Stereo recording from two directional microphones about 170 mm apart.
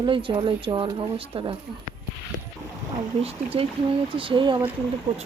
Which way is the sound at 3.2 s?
35° right (ahead or behind).